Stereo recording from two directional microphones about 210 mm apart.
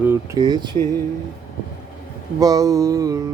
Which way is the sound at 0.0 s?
10° right (ahead or behind).